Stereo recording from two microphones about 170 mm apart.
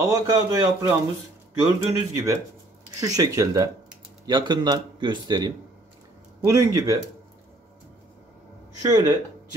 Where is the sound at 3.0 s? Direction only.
20° right (ahead or behind).